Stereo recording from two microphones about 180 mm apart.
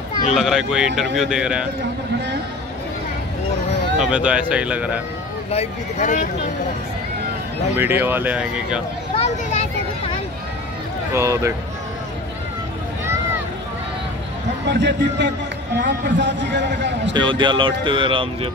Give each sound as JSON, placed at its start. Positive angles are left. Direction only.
{"t": 0.3, "sound": "speech", "side_deg": 0}
{"t": 4.0, "sound": "speech", "side_deg": -5}
{"t": 5.5, "sound": "speech", "side_deg": 35}
{"t": 7.7, "sound": "speech", "side_deg": -10}
{"t": 9.1, "sound": "a sound", "side_deg": 35}
{"t": 11.1, "sound": "speech", "side_deg": -15}
{"t": 14.7, "sound": "a man's voice", "side_deg": -75}
{"t": 17.1, "sound": "speech", "side_deg": -25}